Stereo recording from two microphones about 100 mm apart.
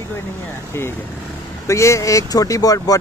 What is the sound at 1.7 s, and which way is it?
Speech, 30° left (ahead or behind).